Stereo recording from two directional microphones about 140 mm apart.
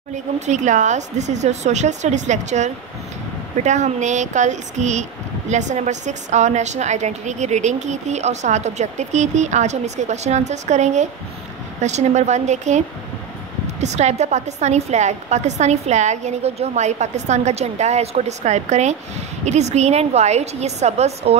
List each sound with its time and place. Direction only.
0.5 s a woman's voice: 60° right (ahead or behind)